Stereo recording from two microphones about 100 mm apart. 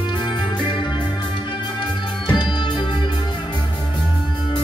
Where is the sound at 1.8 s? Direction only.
50° left (ahead or behind).